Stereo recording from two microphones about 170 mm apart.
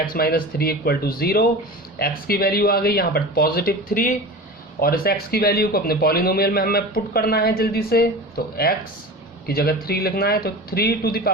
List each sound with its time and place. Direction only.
0.0 s a man's voice: 60° left (ahead or behind)